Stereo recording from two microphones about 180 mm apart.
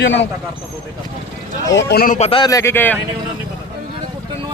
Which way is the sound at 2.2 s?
30° left (ahead or behind).